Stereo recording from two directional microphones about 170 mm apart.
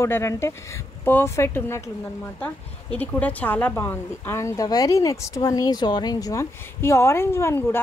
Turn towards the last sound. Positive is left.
turn(degrees=15)  # may be behind; listen again after turning